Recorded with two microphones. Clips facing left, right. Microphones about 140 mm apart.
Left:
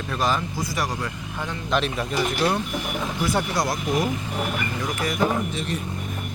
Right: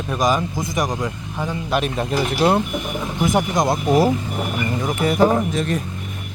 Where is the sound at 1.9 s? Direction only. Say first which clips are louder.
Right 4 dB; 30° right (ahead or behind).